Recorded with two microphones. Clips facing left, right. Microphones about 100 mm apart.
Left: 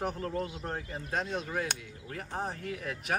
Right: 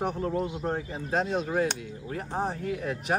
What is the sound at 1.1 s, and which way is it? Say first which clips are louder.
Speech: right 7 dB; centre (ahead or behind).